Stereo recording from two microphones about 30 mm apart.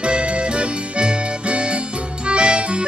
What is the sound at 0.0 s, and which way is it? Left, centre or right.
Music, right.